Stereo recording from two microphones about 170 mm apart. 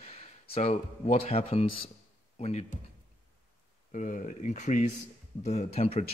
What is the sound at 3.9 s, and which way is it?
Speech, 50° left (ahead or behind).